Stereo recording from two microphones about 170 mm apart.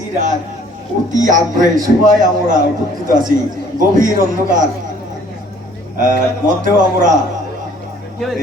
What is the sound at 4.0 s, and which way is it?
Speech, 50° right (ahead or behind).